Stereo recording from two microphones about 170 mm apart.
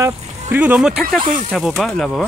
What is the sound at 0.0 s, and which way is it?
Speech, 10° right (ahead or behind).